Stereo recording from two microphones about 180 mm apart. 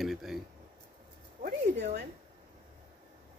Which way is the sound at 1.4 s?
60° right (ahead or behind).